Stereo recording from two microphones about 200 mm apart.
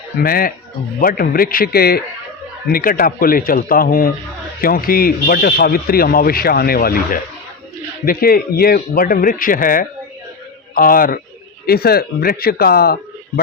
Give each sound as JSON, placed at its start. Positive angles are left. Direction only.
{"t": 0.2, "sound": "a man's voice", "side_deg": 45}